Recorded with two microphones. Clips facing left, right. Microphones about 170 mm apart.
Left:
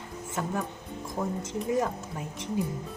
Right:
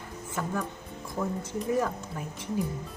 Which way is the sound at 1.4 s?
20° left (ahead or behind).